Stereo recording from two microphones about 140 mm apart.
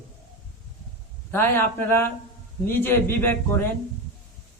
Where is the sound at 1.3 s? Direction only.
15° left (ahead or behind).